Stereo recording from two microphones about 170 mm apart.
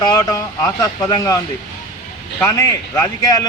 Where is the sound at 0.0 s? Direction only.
20° left (ahead or behind).